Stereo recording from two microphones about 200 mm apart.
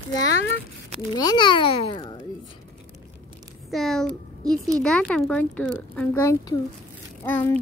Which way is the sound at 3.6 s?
Centre (ahead or behind).